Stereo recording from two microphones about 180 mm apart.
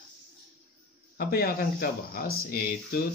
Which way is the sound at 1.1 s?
60° left (ahead or behind).